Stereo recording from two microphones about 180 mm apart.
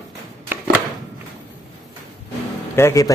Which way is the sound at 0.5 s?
10° right (ahead or behind).